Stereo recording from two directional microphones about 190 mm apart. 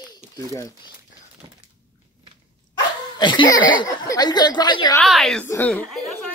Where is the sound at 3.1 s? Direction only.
25° left (ahead or behind).